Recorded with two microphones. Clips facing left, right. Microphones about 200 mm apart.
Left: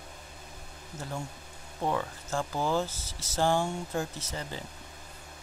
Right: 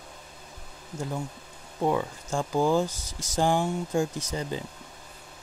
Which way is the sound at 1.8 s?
15° right (ahead or behind).